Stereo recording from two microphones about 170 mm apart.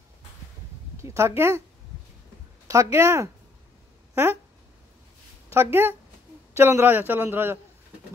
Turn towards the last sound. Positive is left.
turn(degrees=-10)  # may be behind; listen again after turning